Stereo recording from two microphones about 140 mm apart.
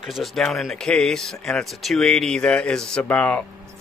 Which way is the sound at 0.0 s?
Centre (ahead or behind).